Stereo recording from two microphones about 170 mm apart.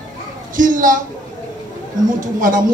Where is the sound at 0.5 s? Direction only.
50° right (ahead or behind).